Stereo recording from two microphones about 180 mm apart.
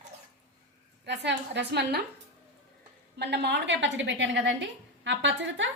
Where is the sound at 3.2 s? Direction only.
70° right (ahead or behind).